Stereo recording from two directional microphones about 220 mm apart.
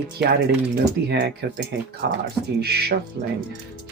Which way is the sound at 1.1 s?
50° right (ahead or behind).